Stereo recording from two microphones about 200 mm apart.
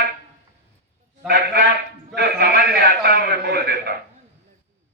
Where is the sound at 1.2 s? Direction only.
55° right (ahead or behind).